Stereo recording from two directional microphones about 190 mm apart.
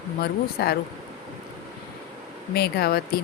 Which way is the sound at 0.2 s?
55° left (ahead or behind).